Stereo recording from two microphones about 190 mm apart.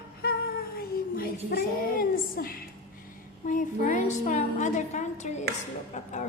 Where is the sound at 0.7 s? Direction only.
50° left (ahead or behind).